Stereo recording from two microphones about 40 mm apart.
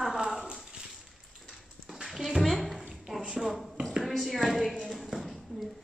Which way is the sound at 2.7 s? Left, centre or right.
Centre.